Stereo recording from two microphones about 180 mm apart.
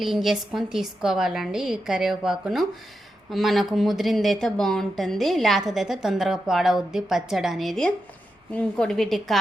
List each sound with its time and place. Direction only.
0.0 s speech: centre (ahead or behind)